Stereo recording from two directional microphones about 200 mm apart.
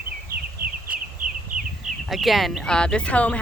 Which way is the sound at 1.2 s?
40° right (ahead or behind).